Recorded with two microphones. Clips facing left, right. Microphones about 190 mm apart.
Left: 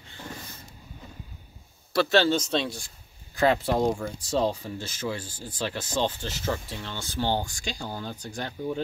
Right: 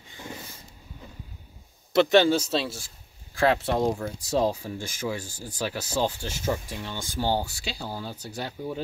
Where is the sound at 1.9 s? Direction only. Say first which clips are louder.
Right 3 dB; 20° right (ahead or behind).